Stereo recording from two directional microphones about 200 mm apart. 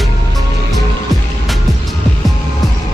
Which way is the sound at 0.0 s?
Centre (ahead or behind).